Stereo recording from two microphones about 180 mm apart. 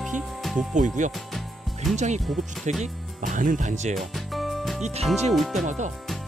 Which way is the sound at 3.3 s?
45° right (ahead or behind).